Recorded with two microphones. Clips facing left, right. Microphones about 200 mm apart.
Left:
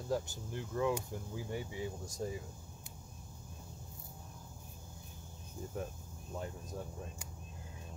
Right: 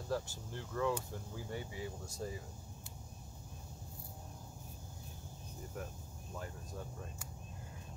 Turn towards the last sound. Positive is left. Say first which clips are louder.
# left 3 dB
turn(degrees=20)  # may be behind; listen again after turning